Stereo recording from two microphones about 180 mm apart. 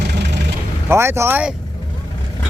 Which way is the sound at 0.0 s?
70° right (ahead or behind).